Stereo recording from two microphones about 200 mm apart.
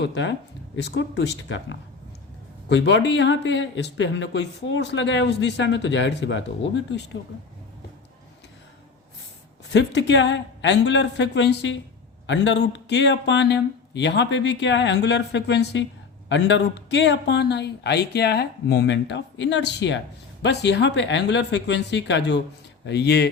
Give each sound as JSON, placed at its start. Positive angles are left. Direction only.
{"t": 0.0, "sound": "speech", "side_deg": 65}
{"t": 9.7, "sound": "speech", "side_deg": 60}